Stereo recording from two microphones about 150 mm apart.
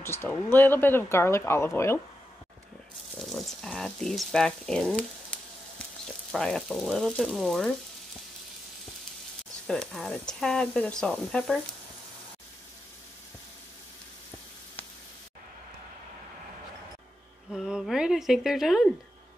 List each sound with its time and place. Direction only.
0.0 s speech: 15° left (ahead or behind)
3.2 s speech: centre (ahead or behind)
9.7 s speech: 5° left (ahead or behind)
17.5 s speech: 5° right (ahead or behind)